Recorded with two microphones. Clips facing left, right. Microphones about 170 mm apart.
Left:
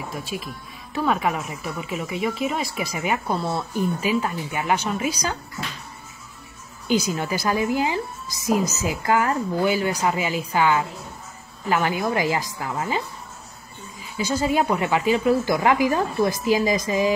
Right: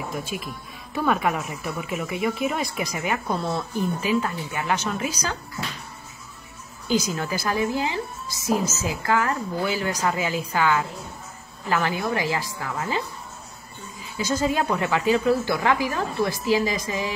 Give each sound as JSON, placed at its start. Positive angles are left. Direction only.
{"t": 0.3, "sound": "a woman's voice", "side_deg": -5}
{"t": 7.1, "sound": "a woman's voice", "side_deg": 15}
{"t": 11.8, "sound": "a woman's voice", "side_deg": 20}
{"t": 14.2, "sound": "speech", "side_deg": 10}
{"t": 15.4, "sound": "a woman's voice", "side_deg": 15}